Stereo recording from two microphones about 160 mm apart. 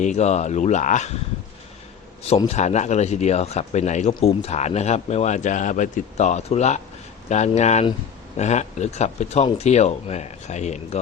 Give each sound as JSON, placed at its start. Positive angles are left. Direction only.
{"t": 0.0, "sound": "speech", "side_deg": 45}
{"t": 2.5, "sound": "speech", "side_deg": 45}